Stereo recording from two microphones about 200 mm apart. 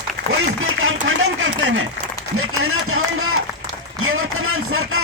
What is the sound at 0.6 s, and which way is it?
Speech, 85° right.